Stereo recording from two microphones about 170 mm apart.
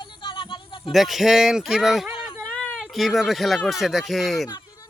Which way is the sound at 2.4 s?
5° left (ahead or behind).